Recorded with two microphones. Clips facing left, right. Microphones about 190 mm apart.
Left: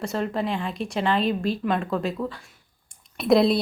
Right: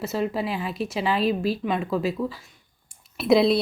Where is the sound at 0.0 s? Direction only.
5° right (ahead or behind).